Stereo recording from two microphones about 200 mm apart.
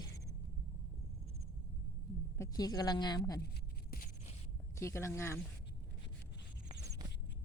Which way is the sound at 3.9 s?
45° left (ahead or behind).